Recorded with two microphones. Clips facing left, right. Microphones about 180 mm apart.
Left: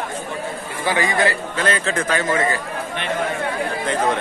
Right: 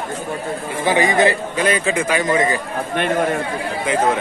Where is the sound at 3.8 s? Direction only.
5° right (ahead or behind).